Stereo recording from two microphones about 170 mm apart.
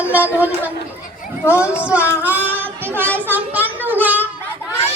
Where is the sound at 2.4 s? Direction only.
10° right (ahead or behind).